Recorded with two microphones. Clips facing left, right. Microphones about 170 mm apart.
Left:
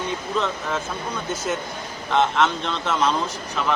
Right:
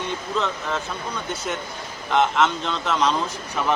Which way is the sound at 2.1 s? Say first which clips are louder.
Even; centre (ahead or behind).